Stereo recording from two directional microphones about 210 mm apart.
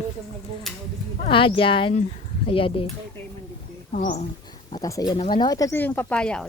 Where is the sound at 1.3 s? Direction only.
25° left (ahead or behind).